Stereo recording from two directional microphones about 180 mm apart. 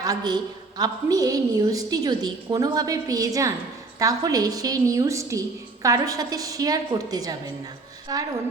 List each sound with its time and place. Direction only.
0.0 s a woman's voice: 20° right (ahead or behind)